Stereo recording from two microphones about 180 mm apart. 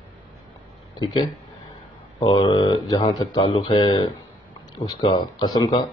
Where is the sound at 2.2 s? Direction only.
35° left (ahead or behind).